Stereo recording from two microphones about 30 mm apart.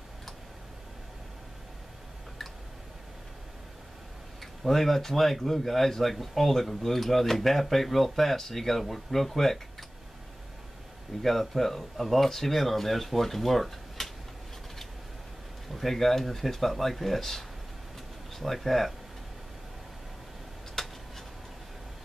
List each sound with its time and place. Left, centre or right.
4.6 s speech: centre
11.2 s speech: centre
15.7 s speech: centre
20.8 s tick-tock: centre